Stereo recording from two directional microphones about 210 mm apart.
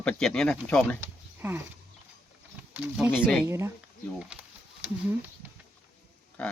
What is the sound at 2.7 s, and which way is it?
Speech, 5° right (ahead or behind).